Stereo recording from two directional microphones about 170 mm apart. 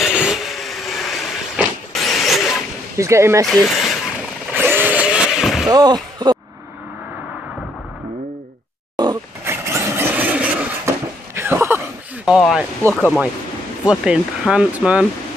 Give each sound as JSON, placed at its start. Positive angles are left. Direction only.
{"t": 0.0, "sound": "vehicle", "side_deg": -5}
{"t": 3.0, "sound": "speech", "side_deg": -15}
{"t": 3.4, "sound": "speech", "side_deg": 0}
{"t": 4.6, "sound": "vehicle", "side_deg": -10}
{"t": 5.7, "sound": "speech", "side_deg": -25}
{"t": 8.9, "sound": "roaring cats", "side_deg": -25}
{"t": 9.4, "sound": "vehicle", "side_deg": -15}
{"t": 11.3, "sound": "a sound", "side_deg": -15}
{"t": 12.3, "sound": "a sound", "side_deg": 0}
{"t": 12.9, "sound": "speech", "side_deg": 5}